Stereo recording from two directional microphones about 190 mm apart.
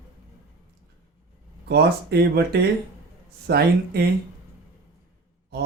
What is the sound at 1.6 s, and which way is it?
A man's voice, 55° right (ahead or behind).